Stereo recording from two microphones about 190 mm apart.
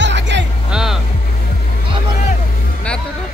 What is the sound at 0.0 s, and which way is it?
Music, 70° right (ahead or behind).